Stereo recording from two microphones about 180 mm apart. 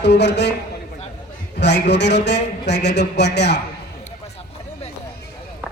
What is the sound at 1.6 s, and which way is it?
Speech, 70° left (ahead or behind).